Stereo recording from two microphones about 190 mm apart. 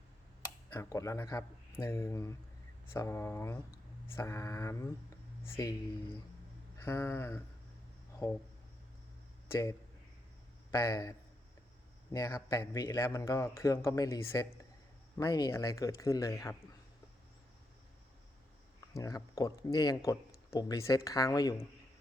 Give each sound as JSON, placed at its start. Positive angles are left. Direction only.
{"t": 0.7, "sound": "speech", "side_deg": 15}
{"t": 6.7, "sound": "speech", "side_deg": 10}
{"t": 9.5, "sound": "a man's voice", "side_deg": 15}
{"t": 12.1, "sound": "speech", "side_deg": 15}
{"t": 18.9, "sound": "speech", "side_deg": 20}